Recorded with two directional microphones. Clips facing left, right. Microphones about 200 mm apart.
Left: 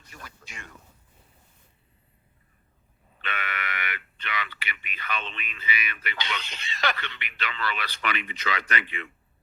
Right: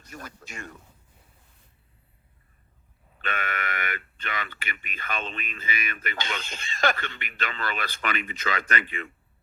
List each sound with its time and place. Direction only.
0.1 s a man's voice: 45° right (ahead or behind)
3.2 s speech: 45° right (ahead or behind)